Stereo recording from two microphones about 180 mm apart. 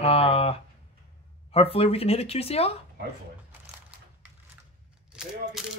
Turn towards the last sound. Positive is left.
turn(degrees=-5)  # may be behind; listen again after turning